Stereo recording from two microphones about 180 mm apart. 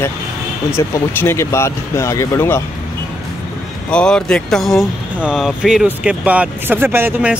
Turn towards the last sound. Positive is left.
turn(degrees=-10)  # may be behind; listen again after turning